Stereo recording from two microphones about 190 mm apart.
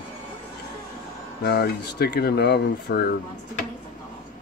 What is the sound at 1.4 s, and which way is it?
Speech, 60° left (ahead or behind).